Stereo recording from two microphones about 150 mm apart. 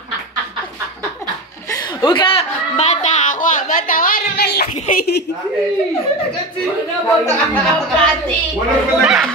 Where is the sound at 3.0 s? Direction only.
60° left (ahead or behind); by 5.2 s 85° left.